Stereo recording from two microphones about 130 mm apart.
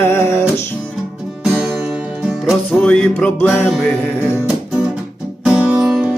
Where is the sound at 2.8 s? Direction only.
10° left (ahead or behind).